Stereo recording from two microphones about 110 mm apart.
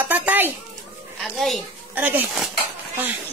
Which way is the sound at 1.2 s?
Centre (ahead or behind).